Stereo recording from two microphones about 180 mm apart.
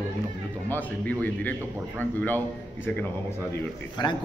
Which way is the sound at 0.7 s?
10° left (ahead or behind).